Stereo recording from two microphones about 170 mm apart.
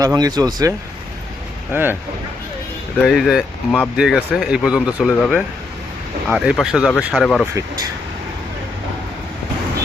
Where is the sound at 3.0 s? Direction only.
Centre (ahead or behind).